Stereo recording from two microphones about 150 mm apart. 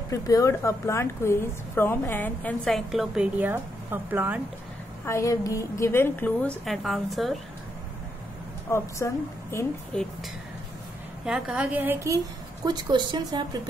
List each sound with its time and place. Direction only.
0.1 s a woman's voice: 20° left (ahead or behind); by 4.4 s 10° right (ahead or behind)
5.0 s a woman's voice: 20° left (ahead or behind)
6.6 s a woman's voice: centre (ahead or behind)
8.6 s a woman's voice: 20° left (ahead or behind)
9.9 s a woman's voice: 5° left (ahead or behind)
11.2 s a woman's voice: 5° right (ahead or behind); by 13.6 s 25° right (ahead or behind)